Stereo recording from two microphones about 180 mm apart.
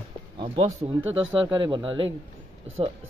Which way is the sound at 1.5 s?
25° right (ahead or behind).